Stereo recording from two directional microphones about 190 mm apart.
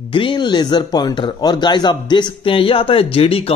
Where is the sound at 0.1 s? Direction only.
25° left (ahead or behind).